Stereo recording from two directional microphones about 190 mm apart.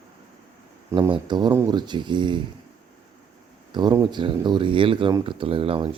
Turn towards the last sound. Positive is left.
turn(degrees=-30)  # may be behind; listen again after turning